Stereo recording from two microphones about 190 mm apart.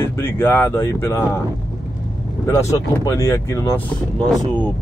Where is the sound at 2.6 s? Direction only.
15° left (ahead or behind).